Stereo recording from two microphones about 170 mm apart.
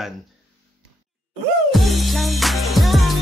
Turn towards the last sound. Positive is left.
turn(degrees=0)  # may be behind; listen again after turning